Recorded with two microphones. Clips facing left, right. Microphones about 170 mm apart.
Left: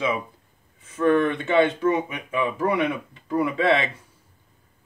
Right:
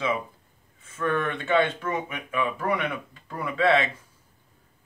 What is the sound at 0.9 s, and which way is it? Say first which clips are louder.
Speech: left 7 dB; 30° left (ahead or behind).